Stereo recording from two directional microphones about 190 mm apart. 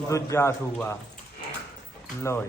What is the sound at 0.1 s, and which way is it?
Speech, 15° left (ahead or behind).